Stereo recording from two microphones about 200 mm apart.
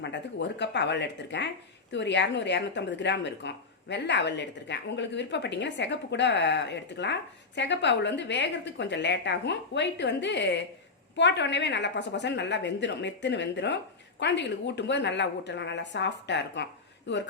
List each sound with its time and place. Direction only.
0.0 s a woman's voice: 60° left (ahead or behind)